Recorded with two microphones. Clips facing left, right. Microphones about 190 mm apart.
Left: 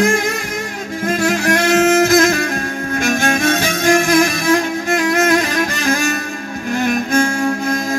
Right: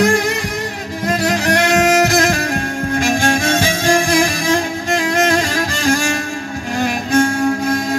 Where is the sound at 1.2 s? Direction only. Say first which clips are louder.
Left 1 dB; 35° right (ahead or behind).